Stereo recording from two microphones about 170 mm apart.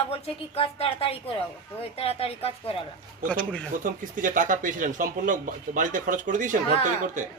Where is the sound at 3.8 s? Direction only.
50° right (ahead or behind).